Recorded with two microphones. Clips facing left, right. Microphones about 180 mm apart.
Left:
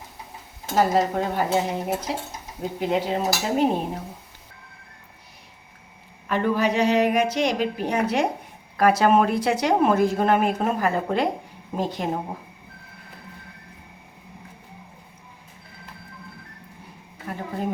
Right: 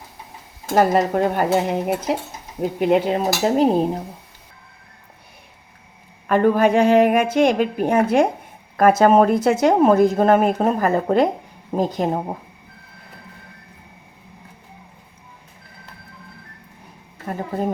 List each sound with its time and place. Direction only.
0.8 s stir: 60° right (ahead or behind)
3.4 s a woman's voice: 35° right (ahead or behind)
6.2 s a woman's voice: 50° right (ahead or behind)
17.2 s a woman's voice: 40° right (ahead or behind)